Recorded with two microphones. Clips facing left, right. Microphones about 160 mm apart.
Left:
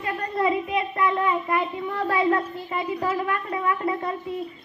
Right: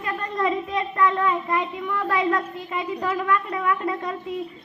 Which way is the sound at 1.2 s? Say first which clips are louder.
Even; 20° left (ahead or behind).